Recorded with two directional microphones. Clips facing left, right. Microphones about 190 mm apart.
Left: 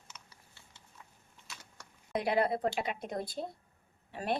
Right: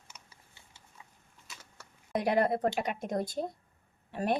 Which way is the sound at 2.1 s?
45° right (ahead or behind).